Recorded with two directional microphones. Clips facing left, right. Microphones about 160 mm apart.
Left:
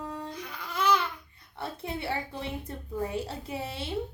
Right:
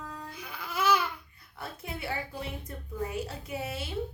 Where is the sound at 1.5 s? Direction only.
30° left (ahead or behind).